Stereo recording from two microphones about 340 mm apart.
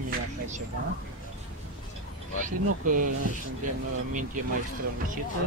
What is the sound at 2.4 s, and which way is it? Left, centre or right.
Speech, right.